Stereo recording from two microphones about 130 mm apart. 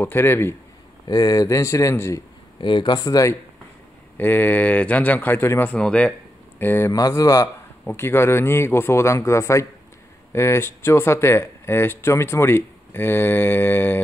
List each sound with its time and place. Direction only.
0.0 s speech: 15° left (ahead or behind)
1.0 s speech: 30° left (ahead or behind)
2.6 s speech: 40° left (ahead or behind)
4.2 s speech: 15° left (ahead or behind)